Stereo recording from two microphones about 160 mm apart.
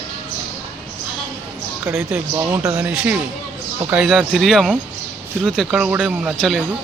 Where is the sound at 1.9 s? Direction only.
15° right (ahead or behind).